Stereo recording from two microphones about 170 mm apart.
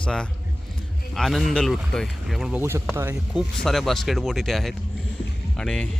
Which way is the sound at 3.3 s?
Centre (ahead or behind).